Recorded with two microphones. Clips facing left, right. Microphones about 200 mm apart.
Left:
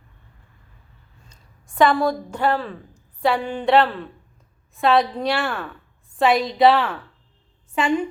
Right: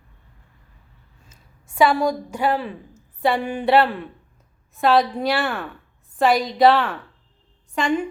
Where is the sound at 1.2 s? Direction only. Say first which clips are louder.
Right 2 dB; 5° right (ahead or behind).